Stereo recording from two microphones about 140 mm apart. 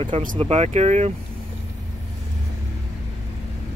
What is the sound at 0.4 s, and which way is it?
Speech, 50° right (ahead or behind).